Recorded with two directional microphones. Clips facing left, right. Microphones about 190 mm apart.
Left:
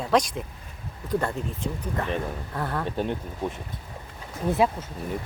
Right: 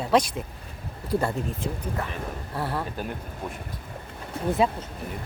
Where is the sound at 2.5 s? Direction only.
5° right (ahead or behind).